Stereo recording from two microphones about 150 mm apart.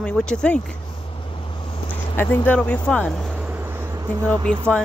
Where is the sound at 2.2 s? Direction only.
15° left (ahead or behind).